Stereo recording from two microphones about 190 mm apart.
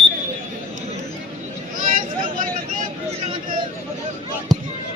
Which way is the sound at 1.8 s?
45° right (ahead or behind).